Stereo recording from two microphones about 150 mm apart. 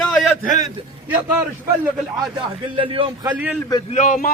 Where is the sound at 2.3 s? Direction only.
35° right (ahead or behind).